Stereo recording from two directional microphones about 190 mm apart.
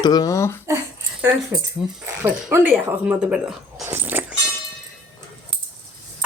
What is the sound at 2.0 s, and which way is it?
Speech, 10° right (ahead or behind).